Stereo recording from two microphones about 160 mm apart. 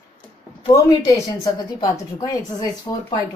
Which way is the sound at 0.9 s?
20° left (ahead or behind).